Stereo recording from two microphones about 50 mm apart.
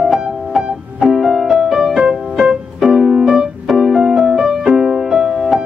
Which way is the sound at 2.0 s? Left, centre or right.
Right.